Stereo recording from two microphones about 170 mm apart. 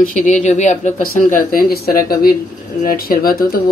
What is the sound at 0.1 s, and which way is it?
Speech, 45° left (ahead or behind).